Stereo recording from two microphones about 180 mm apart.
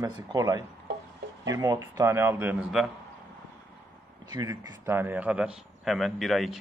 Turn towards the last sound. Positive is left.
turn(degrees=0)  # may be behind; listen again after turning